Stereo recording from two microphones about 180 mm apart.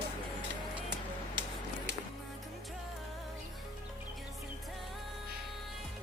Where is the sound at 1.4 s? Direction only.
80° right.